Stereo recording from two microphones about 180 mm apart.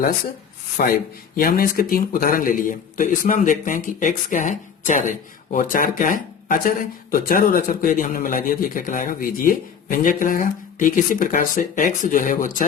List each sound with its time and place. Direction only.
0.8 s a man's voice: 55° left (ahead or behind)